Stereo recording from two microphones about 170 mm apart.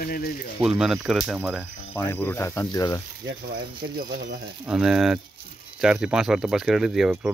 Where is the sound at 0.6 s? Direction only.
5° right (ahead or behind).